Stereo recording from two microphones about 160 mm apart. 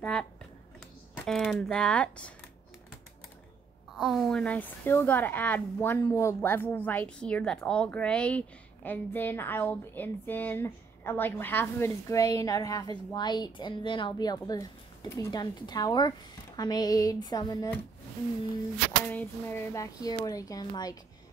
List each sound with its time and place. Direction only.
0.0 s a sound: 5° left (ahead or behind)
1.1 s speech: 5° left (ahead or behind)
3.9 s a woman's voice: centre (ahead or behind); by 17.6 s 25° left (ahead or behind)
19.0 s speech: 10° left (ahead or behind)